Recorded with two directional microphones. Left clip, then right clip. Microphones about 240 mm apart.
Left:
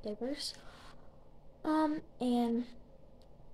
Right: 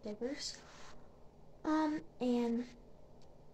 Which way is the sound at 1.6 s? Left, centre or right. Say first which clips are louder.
Left 3 dB; left.